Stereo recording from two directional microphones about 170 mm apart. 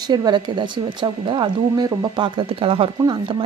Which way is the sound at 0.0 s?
25° right (ahead or behind).